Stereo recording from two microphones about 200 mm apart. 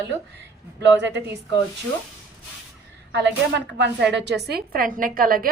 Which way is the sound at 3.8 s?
60° right (ahead or behind).